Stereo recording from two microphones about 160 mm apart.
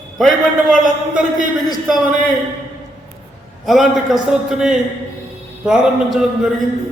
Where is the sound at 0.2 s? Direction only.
Centre (ahead or behind).